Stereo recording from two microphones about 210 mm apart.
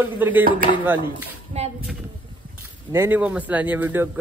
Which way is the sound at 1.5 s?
30° right (ahead or behind).